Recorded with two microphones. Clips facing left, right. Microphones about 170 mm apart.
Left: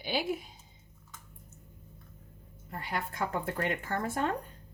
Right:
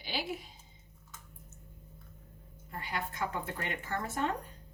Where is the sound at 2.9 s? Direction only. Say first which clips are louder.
Left 2 dB; 50° left (ahead or behind).